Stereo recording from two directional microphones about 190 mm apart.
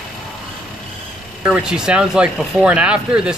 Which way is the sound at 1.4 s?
5° right (ahead or behind).